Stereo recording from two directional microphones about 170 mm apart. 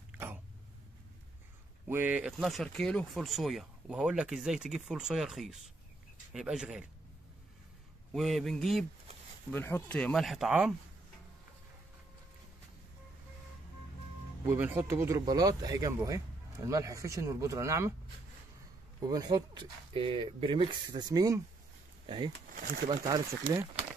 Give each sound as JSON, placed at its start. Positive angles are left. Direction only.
{"t": 1.9, "sound": "speech", "side_deg": -10}
{"t": 8.1, "sound": "speech", "side_deg": 0}
{"t": 14.5, "sound": "speech", "side_deg": -10}
{"t": 18.9, "sound": "speech", "side_deg": -25}